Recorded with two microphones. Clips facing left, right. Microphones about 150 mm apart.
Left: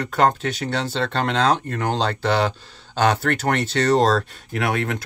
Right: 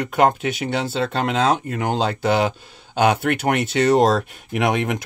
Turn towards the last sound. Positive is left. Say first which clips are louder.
# right 3 dB
turn(degrees=-20)  # may be behind; listen again after turning